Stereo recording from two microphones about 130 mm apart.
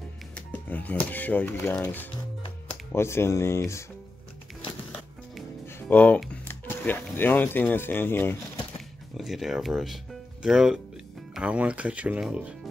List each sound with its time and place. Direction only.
0.3 s speech: 10° left (ahead or behind)
5.7 s speech: 15° left (ahead or behind)
9.1 s speech: centre (ahead or behind)